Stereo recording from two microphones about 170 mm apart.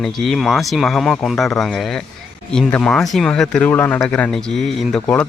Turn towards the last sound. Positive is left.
turn(degrees=5)  # may be behind; listen again after turning